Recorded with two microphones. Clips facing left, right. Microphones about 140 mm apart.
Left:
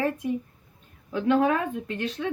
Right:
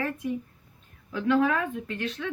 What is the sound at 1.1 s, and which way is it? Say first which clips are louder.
Speech: left 2 dB; 30° left (ahead or behind).